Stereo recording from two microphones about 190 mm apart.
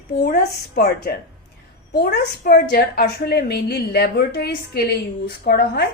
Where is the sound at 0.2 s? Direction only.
50° left (ahead or behind).